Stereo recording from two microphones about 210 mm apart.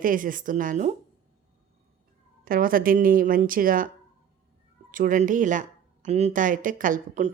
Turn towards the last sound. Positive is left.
turn(degrees=-35)  # may be behind; listen again after turning